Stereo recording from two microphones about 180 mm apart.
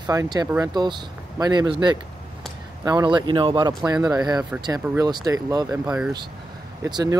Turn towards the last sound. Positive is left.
turn(degrees=-20)  # may be behind; listen again after turning